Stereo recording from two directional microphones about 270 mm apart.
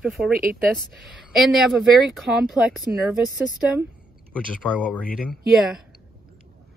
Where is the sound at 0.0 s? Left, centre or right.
Centre.